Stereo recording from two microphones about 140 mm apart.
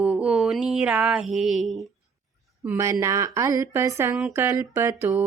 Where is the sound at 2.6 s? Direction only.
20° right (ahead or behind).